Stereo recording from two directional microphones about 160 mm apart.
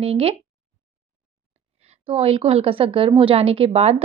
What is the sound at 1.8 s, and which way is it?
A woman's voice, 40° right (ahead or behind).